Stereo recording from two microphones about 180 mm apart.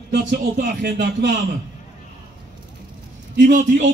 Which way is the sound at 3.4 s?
45° right (ahead or behind).